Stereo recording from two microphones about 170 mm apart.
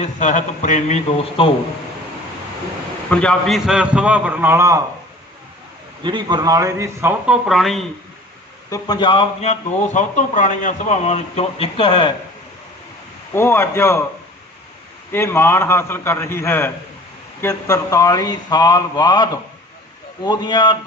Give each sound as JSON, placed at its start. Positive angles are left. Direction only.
{"t": 0.0, "sound": "a man's voice", "side_deg": 45}
{"t": 3.1, "sound": "a man's voice", "side_deg": 5}
{"t": 6.0, "sound": "a man's voice", "side_deg": -30}
{"t": 8.7, "sound": "a man's voice", "side_deg": 25}
{"t": 13.3, "sound": "a man's voice", "side_deg": 15}
{"t": 15.1, "sound": "a man's voice", "side_deg": 15}
{"t": 17.4, "sound": "mantra", "side_deg": 15}